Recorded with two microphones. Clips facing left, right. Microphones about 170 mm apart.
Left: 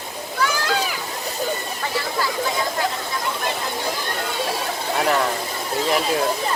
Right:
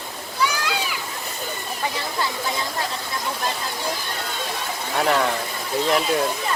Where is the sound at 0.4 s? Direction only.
45° left (ahead or behind).